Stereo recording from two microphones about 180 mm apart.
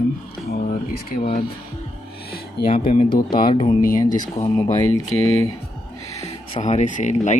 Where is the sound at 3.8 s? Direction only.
50° left (ahead or behind).